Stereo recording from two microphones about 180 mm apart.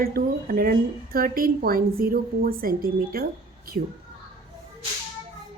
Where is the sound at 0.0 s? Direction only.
55° right (ahead or behind).